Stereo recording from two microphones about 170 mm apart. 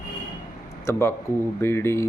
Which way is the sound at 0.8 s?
15° left (ahead or behind).